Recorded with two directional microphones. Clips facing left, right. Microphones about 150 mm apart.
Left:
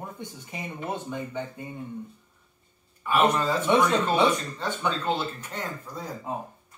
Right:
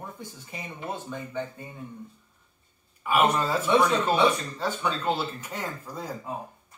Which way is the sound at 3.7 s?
20° left (ahead or behind).